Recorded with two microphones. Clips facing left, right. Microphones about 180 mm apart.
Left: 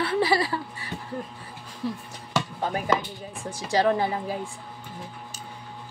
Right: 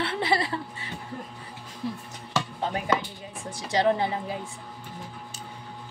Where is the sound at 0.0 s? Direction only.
25° right (ahead or behind).